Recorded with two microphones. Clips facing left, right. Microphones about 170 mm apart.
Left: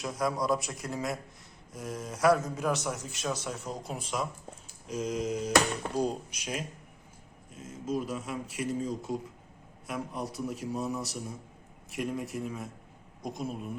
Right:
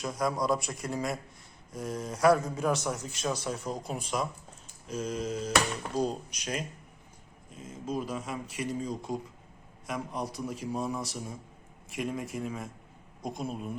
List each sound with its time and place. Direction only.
0.0 s speech: centre (ahead or behind)
4.9 s a sound: 15° left (ahead or behind)
7.5 s speech: 5° left (ahead or behind)
10.2 s speech: centre (ahead or behind)